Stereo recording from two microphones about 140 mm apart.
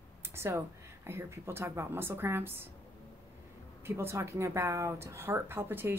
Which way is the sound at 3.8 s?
15° right (ahead or behind).